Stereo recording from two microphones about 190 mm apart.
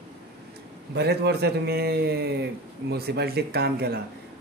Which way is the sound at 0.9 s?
60° right (ahead or behind).